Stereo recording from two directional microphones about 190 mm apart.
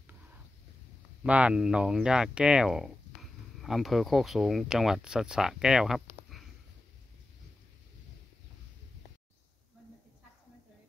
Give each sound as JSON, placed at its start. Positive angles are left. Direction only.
{"t": 1.2, "sound": "speech", "side_deg": -5}